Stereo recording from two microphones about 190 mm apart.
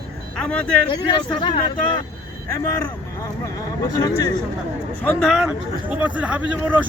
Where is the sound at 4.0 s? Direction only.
20° left (ahead or behind).